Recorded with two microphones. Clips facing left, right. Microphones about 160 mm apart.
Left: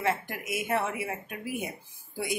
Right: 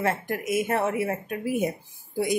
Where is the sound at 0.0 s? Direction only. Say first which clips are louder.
Right 4 dB; 45° right (ahead or behind).